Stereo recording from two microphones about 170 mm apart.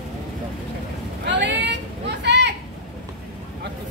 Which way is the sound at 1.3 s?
90° right.